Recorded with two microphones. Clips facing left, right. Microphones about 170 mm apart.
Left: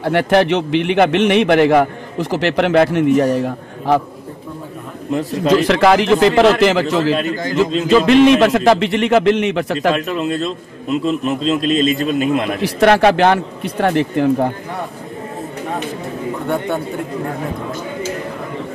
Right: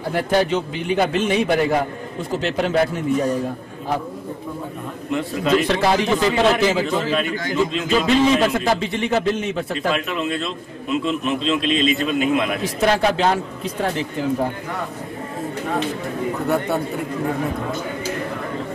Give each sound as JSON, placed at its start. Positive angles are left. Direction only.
{"t": 0.0, "sound": "a man's voice", "side_deg": 80}
{"t": 5.7, "sound": "a man's voice", "side_deg": 85}
{"t": 9.9, "sound": "a man's voice", "side_deg": 40}
{"t": 12.6, "sound": "a man's voice", "side_deg": 70}